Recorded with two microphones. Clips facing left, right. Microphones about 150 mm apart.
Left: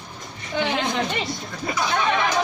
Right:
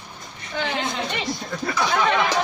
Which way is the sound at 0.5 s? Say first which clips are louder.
Left 3 dB; 20° left (ahead or behind).